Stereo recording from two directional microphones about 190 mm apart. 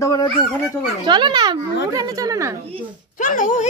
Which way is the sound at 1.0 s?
25° right (ahead or behind).